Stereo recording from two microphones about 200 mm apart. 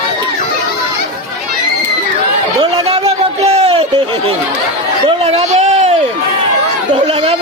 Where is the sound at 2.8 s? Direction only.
30° right (ahead or behind).